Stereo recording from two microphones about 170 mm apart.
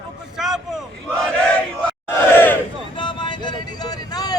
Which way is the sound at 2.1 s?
10° left (ahead or behind).